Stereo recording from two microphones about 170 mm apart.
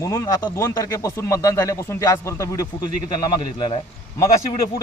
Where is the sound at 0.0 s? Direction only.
15° left (ahead or behind).